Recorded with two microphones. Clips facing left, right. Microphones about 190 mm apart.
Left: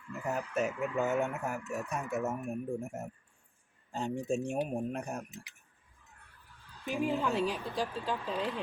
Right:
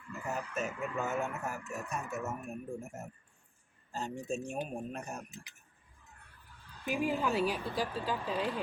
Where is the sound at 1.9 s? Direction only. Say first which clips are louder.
Left 3 dB; 15° left (ahead or behind).